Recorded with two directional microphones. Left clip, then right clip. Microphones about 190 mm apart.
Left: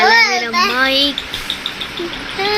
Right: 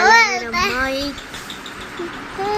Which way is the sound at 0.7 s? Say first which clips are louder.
Left 7 dB; centre (ahead or behind).